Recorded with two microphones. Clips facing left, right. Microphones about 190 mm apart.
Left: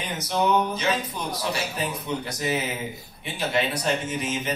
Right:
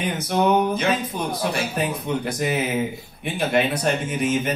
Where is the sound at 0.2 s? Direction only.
55° right (ahead or behind).